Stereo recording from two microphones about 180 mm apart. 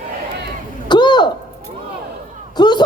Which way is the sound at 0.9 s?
25° left (ahead or behind).